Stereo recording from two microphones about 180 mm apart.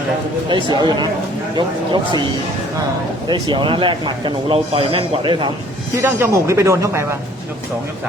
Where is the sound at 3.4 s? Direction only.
25° right (ahead or behind).